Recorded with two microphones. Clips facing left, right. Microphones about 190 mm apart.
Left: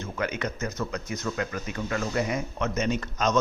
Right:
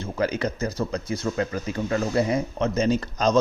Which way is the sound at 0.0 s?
35° right (ahead or behind).